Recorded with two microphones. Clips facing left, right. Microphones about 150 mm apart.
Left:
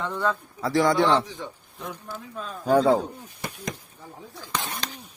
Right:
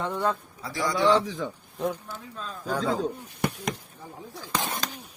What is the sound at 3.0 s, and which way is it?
Speech, 65° right (ahead or behind).